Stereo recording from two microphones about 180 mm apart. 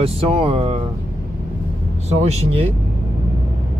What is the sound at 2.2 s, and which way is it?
Speech, 35° right (ahead or behind).